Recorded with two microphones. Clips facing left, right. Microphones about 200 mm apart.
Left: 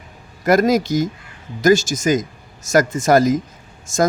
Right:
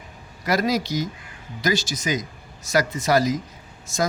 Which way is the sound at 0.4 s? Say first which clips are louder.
Left 7 dB; 50° left (ahead or behind).